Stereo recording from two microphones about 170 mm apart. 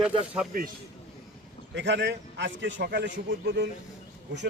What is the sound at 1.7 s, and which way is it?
A man's voice, 90° right.